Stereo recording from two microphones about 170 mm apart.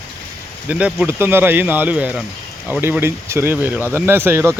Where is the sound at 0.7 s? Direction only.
5° right (ahead or behind).